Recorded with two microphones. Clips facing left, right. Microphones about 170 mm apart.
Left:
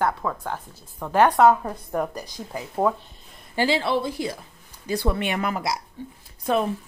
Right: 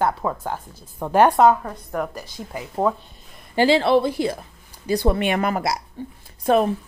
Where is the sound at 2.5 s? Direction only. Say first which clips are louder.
Right 1 dB; 5° right (ahead or behind).